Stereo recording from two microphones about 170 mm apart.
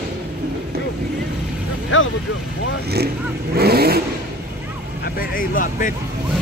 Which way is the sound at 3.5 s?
65° right (ahead or behind).